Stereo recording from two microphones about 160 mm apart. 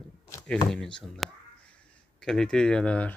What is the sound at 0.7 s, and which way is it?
Speech, 5° left (ahead or behind).